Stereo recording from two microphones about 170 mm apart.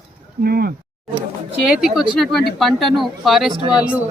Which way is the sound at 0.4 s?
65° right (ahead or behind).